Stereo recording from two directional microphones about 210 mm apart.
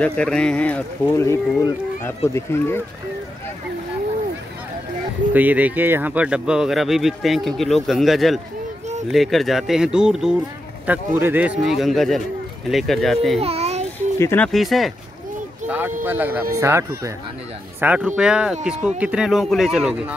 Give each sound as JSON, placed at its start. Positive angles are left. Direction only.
{"t": 0.0, "sound": "speech", "side_deg": 5}
{"t": 5.3, "sound": "speech", "side_deg": -10}
{"t": 13.4, "sound": "babbling", "side_deg": -30}
{"t": 14.1, "sound": "speech", "side_deg": 10}
{"t": 15.6, "sound": "a sound", "side_deg": -10}
{"t": 16.0, "sound": "speech", "side_deg": -10}